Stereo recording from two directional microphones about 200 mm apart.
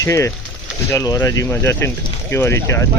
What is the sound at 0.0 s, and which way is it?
Speech, 15° left (ahead or behind).